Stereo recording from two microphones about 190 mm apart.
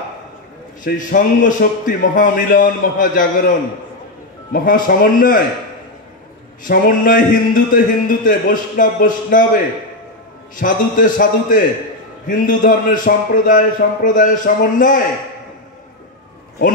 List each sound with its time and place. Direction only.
0.8 s a man's voice: 45° left (ahead or behind)
6.6 s a man's voice: 45° left (ahead or behind)